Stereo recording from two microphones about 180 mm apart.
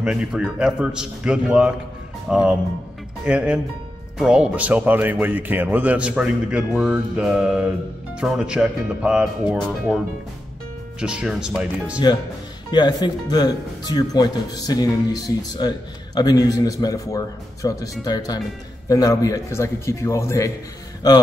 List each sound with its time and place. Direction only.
0.0 s speech: 5° right (ahead or behind)
12.7 s a man's voice: 25° left (ahead or behind)